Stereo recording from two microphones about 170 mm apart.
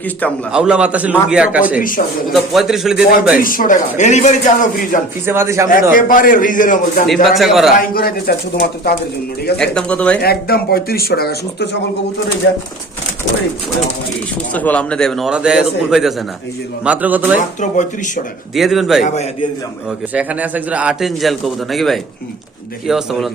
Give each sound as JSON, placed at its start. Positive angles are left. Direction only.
{"t": 0.5, "sound": "a man's voice", "side_deg": -5}
{"t": 3.4, "sound": "a man's voice", "side_deg": 55}
{"t": 5.2, "sound": "a man's voice", "side_deg": -15}
{"t": 5.9, "sound": "a man's voice", "side_deg": 55}
{"t": 7.1, "sound": "a man's voice", "side_deg": 0}
{"t": 7.8, "sound": "speech", "side_deg": 60}
{"t": 9.6, "sound": "speech", "side_deg": 5}
{"t": 10.2, "sound": "speech", "side_deg": 65}
{"t": 12.4, "sound": "speech", "side_deg": 90}
{"t": 14.5, "sound": "a man's voice", "side_deg": 10}
{"t": 17.3, "sound": "a man's voice", "side_deg": 45}
{"t": 18.5, "sound": "a man's voice", "side_deg": 0}
{"t": 19.0, "sound": "a man's voice", "side_deg": 40}
{"t": 20.1, "sound": "a man's voice", "side_deg": -10}